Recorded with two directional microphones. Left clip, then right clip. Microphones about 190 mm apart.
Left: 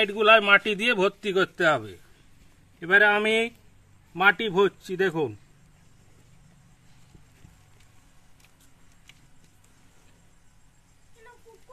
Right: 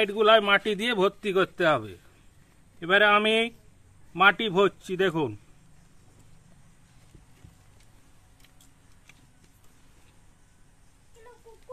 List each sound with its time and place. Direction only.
0.0 s a man's voice: 10° left (ahead or behind); by 5.3 s 25° right (ahead or behind)